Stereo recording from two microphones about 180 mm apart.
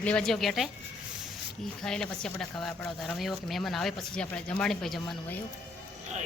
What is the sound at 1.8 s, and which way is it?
Speech, 5° left (ahead or behind).